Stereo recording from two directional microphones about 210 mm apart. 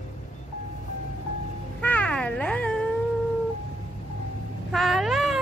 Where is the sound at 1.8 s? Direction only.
5° left (ahead or behind).